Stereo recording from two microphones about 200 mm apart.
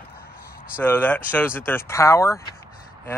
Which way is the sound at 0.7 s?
10° left (ahead or behind).